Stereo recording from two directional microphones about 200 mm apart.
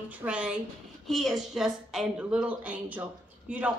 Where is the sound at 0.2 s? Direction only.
5° right (ahead or behind).